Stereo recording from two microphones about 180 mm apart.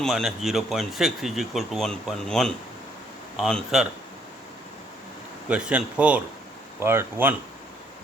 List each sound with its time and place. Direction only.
0.0 s speech: centre (ahead or behind)
5.5 s speech: 5° right (ahead or behind)